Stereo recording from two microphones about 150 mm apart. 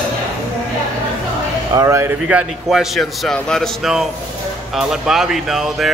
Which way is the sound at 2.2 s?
5° right (ahead or behind).